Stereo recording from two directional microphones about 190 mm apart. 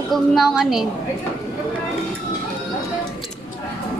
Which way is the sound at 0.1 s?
Centre (ahead or behind).